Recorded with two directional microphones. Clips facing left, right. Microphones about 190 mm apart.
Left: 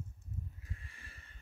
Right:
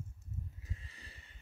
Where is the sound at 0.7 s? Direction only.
20° right (ahead or behind).